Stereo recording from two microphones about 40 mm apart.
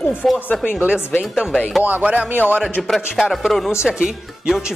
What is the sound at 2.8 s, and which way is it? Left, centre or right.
Speech, centre.